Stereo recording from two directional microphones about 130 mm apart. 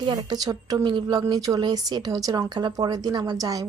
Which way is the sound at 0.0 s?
30° right (ahead or behind).